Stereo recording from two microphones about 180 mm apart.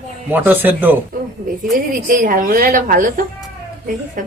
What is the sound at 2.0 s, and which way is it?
A woman's voice, 50° right (ahead or behind).